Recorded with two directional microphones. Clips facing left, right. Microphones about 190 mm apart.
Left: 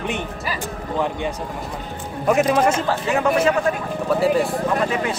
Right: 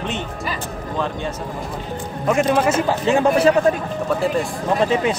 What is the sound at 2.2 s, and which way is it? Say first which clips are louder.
Speech: even; centre (ahead or behind).